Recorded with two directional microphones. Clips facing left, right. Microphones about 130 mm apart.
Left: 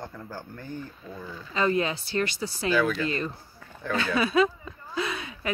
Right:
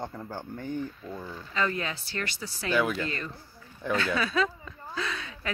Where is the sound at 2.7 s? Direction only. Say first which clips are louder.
Left 1 dB; 15° right (ahead or behind).